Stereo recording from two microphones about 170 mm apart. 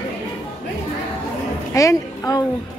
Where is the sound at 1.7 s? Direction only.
20° left (ahead or behind).